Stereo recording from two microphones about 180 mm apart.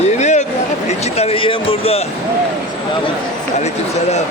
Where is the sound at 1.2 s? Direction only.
30° left (ahead or behind).